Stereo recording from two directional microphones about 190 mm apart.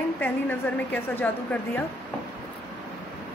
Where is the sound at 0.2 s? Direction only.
10° left (ahead or behind).